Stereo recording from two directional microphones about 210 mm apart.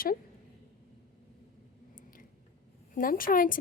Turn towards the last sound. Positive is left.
turn(degrees=40)  # may be behind; listen again after turning